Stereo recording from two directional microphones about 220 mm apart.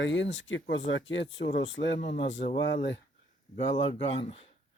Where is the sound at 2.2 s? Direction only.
55° left (ahead or behind).